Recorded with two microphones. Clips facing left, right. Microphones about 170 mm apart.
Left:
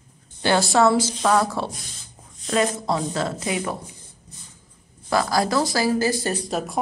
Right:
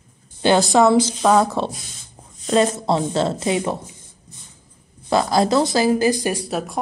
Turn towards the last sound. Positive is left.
turn(degrees=-5)  # may be behind; listen again after turning